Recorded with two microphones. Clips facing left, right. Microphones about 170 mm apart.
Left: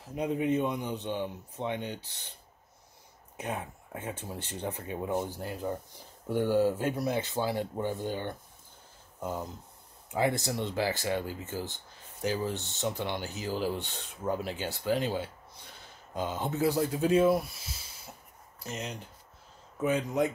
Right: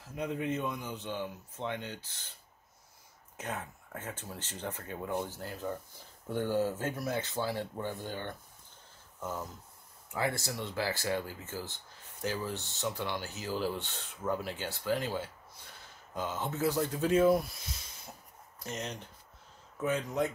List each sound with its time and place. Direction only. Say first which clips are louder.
0.0 s speech: left 5 dB; 20° left (ahead or behind)
3.3 s speech: left 3 dB; 15° left (ahead or behind)
10.1 s speech: left 5 dB; 20° left (ahead or behind)
18.6 s speech: left 1 dB; 5° left (ahead or behind)